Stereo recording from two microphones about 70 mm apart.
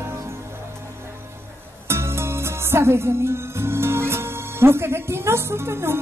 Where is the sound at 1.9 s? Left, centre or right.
Right.